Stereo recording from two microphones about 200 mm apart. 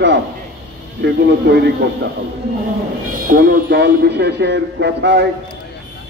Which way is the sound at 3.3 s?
45° right (ahead or behind).